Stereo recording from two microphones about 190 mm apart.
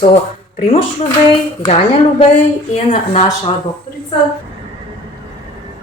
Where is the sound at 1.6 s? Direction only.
30° left (ahead or behind).